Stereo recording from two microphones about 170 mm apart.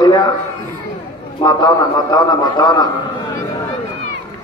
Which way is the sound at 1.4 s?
25° left (ahead or behind).